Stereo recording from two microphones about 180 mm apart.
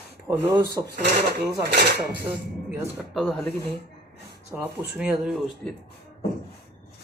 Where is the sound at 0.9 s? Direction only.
65° right (ahead or behind).